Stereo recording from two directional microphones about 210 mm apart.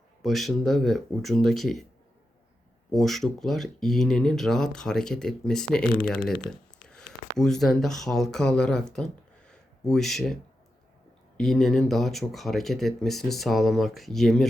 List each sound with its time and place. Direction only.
0.2 s speech: centre (ahead or behind)
2.9 s speech: centre (ahead or behind)
11.3 s speech: centre (ahead or behind)